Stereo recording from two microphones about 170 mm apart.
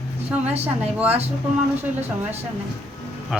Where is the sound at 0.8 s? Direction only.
10° right (ahead or behind).